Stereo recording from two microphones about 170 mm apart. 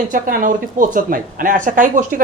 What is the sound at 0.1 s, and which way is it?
Speech, 55° right (ahead or behind).